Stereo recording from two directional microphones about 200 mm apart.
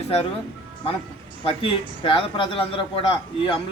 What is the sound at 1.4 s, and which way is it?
Speech, 25° left (ahead or behind).